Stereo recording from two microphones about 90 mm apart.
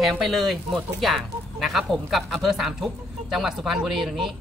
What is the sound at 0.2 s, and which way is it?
Speech, centre (ahead or behind).